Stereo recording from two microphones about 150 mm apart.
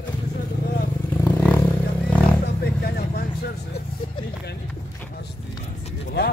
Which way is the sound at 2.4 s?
90° left.